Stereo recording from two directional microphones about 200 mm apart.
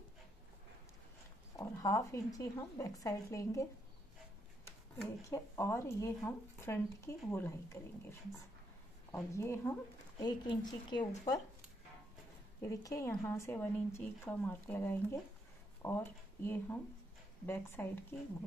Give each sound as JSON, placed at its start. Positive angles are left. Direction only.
{"t": 1.6, "sound": "speech", "side_deg": 15}
{"t": 5.3, "sound": "a woman's voice", "side_deg": 15}
{"t": 12.6, "sound": "speech", "side_deg": 15}